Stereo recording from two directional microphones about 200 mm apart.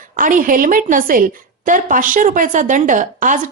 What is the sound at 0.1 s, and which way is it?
A woman's voice, 45° right (ahead or behind).